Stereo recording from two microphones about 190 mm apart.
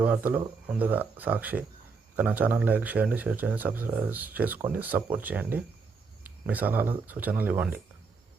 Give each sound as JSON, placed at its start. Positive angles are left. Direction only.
{"t": 0.0, "sound": "speech", "side_deg": -10}